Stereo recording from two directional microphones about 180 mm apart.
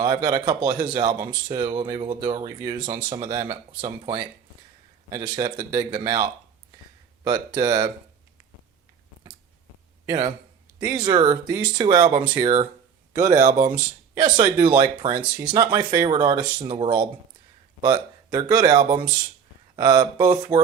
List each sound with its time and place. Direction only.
0.0 s speech: 25° right (ahead or behind)
7.3 s speech: 25° right (ahead or behind)
10.1 s speech: 20° right (ahead or behind)
13.3 s speech: 45° right (ahead or behind)
14.2 s speech: 25° right (ahead or behind)